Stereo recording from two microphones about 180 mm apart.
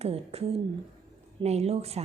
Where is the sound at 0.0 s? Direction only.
35° right (ahead or behind).